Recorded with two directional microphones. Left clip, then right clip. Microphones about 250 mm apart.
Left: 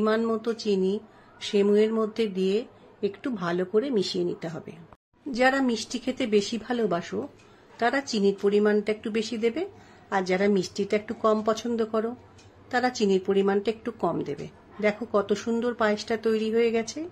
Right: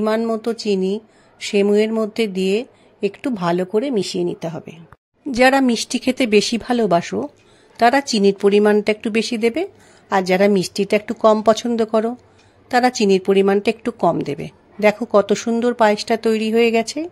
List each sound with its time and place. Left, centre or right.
0.0 s a woman's voice: right